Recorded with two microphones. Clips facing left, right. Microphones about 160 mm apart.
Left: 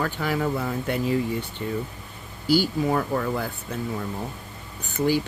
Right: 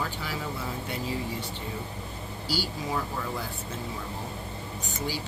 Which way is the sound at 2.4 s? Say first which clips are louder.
Left 11 dB; 50° left (ahead or behind).